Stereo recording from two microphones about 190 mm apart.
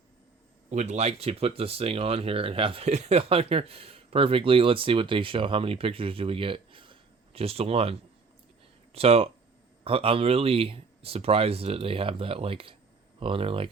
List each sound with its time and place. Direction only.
0.7 s speech: 35° right (ahead or behind)